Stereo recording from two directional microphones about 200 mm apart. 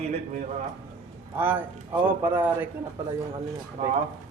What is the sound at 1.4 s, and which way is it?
Speech, 10° right (ahead or behind).